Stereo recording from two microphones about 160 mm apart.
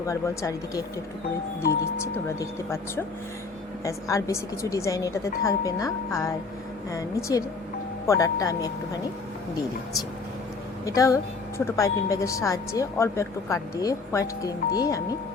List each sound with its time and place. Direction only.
0.0 s speech: 20° left (ahead or behind)
10.8 s speech: 20° left (ahead or behind)